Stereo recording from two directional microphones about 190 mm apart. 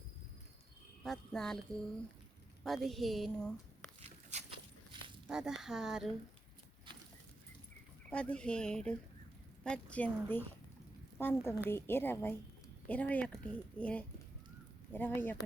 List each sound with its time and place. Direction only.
1.0 s speech: centre (ahead or behind)
2.6 s a woman's voice: centre (ahead or behind)
4.0 s walk: 35° right (ahead or behind)
5.3 s speech: 5° right (ahead or behind)
8.1 s a woman's voice: 5° left (ahead or behind)